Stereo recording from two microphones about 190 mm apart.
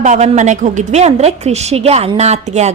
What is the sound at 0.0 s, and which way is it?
A woman's voice, 40° right (ahead or behind).